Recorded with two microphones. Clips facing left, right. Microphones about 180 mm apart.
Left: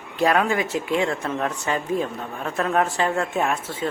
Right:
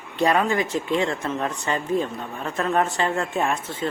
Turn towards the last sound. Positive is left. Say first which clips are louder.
# left 1 dB
turn(degrees=5)  # may be behind; listen again after turning